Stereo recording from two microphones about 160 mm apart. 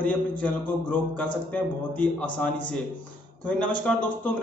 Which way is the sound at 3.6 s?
10° left (ahead or behind).